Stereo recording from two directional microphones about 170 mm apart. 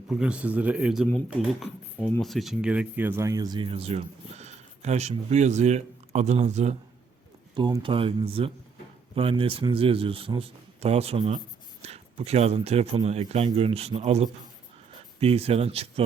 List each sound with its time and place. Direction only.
0.1 s speech: 5° right (ahead or behind); by 6.7 s 40° right (ahead or behind)
7.5 s speech: 30° right (ahead or behind)